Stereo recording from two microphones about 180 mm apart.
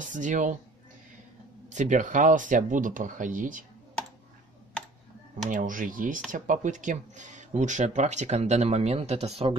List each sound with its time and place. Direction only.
0.0 s speech: 45° right (ahead or behind)
1.7 s speech: 45° right (ahead or behind)
5.5 s speech: 45° right (ahead or behind)